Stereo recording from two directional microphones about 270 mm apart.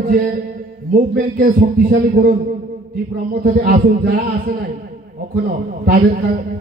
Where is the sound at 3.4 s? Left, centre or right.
Right.